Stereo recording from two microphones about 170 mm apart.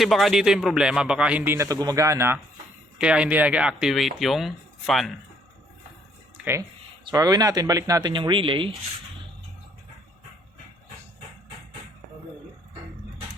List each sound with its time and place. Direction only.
0.0 s a man's voice: centre (ahead or behind)
6.3 s a sound: 10° right (ahead or behind)
7.0 s speech: 20° right (ahead or behind)